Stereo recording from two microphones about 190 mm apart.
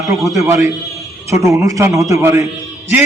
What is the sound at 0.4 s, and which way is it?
A man's voice, 15° right (ahead or behind).